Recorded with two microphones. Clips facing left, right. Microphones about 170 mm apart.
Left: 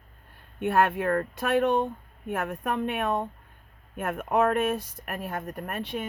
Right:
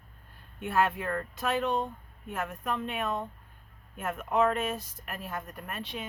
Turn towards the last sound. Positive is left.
turn(degrees=55)  # may be behind; listen again after turning